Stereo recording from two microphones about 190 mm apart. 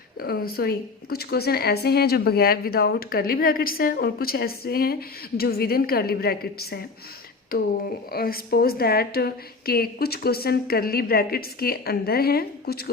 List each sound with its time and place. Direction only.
0.2 s a woman's voice: 55° left (ahead or behind)